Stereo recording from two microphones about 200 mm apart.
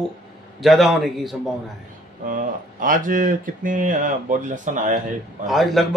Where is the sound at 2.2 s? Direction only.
40° right (ahead or behind).